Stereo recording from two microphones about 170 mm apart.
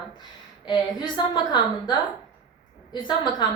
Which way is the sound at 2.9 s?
25° left (ahead or behind).